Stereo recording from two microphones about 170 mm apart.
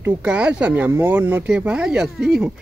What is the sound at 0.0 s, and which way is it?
Speech, 5° right (ahead or behind).